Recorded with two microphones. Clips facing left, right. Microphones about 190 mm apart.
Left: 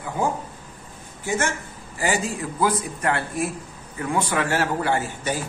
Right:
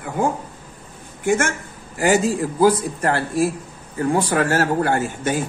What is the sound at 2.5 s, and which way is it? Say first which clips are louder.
Speech: right 6 dB; 35° right (ahead or behind).